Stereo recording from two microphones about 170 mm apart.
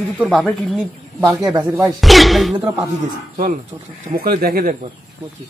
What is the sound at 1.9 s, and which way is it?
Speech, centre (ahead or behind).